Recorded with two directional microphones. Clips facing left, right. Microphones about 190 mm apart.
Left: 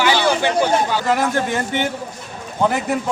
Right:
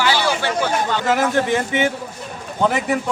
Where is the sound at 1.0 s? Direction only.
Centre (ahead or behind).